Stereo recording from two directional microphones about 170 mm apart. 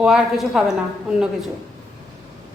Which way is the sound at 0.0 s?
5° right (ahead or behind).